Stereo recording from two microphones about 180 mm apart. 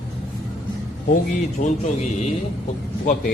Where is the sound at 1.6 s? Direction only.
45° left (ahead or behind).